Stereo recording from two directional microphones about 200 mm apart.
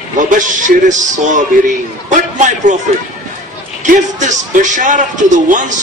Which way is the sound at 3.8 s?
40° right (ahead or behind).